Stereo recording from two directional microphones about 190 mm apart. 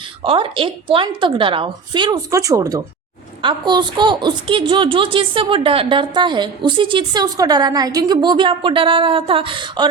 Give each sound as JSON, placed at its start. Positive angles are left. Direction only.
{"t": 0.2, "sound": "a woman's voice", "side_deg": -25}